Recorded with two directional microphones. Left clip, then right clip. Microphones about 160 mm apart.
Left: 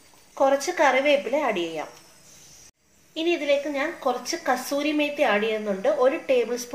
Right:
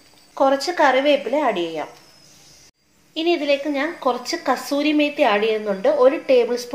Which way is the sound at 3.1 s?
15° right (ahead or behind).